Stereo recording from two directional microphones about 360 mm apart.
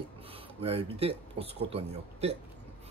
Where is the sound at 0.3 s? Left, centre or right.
Centre.